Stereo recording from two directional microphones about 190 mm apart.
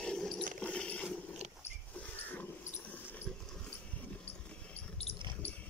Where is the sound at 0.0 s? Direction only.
5° left (ahead or behind).